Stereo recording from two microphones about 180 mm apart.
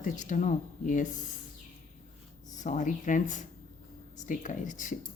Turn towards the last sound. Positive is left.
turn(degrees=45)  # may be behind; listen again after turning